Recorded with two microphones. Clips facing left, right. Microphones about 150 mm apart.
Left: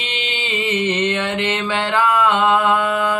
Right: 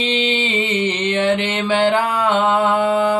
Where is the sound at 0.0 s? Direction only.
30° right (ahead or behind).